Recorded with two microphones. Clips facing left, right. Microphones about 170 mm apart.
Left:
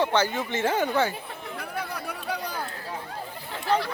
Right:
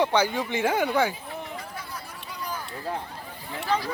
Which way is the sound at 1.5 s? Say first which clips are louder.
Left 4 dB; 65° left (ahead or behind).